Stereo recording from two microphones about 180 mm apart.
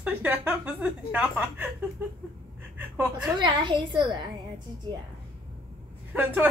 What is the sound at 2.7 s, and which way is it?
Speech, 10° right (ahead or behind).